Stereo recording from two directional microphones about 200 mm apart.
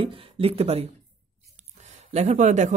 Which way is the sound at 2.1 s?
35° right (ahead or behind).